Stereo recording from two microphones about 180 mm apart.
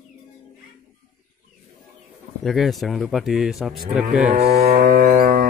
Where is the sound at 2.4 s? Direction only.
Centre (ahead or behind).